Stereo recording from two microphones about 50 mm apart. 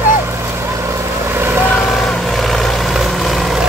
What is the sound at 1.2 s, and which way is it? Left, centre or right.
Vehicle, right.